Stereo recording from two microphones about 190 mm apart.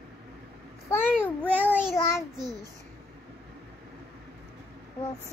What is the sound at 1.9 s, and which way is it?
Child singing, 15° left (ahead or behind).